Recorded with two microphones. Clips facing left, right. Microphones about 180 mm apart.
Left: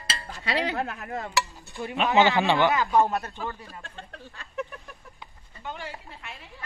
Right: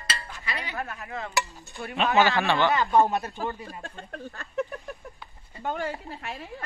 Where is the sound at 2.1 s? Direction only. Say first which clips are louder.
Left 2 dB; 20° left (ahead or behind).